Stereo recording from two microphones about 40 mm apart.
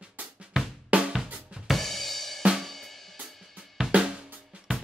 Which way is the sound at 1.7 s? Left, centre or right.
Centre.